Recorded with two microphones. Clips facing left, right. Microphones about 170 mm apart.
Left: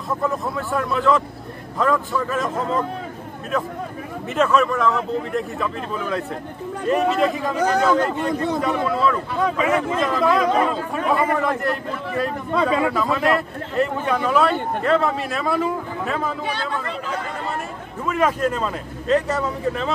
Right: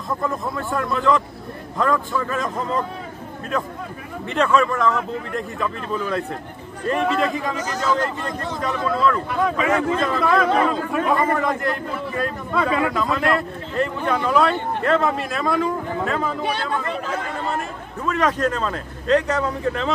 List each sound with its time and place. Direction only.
0.2 s speech: 5° left (ahead or behind)
4.3 s speech: 5° left (ahead or behind)
7.5 s a man's voice: 60° left (ahead or behind)
8.5 s speech: 10° left (ahead or behind)
12.5 s a man's voice: 15° left (ahead or behind)
18.0 s a man's voice: 10° left (ahead or behind)